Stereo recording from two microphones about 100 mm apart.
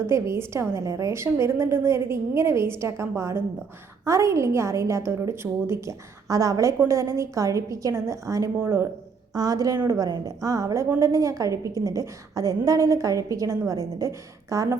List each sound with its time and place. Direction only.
0.1 s a woman's voice: 25° right (ahead or behind)
9.3 s a woman's voice: 35° right (ahead or behind)